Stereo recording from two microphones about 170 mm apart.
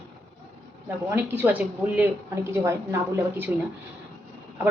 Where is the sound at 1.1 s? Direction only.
10° right (ahead or behind).